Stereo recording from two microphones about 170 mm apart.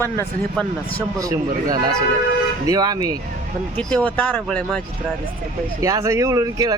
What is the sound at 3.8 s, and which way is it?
Speech, 5° left (ahead or behind).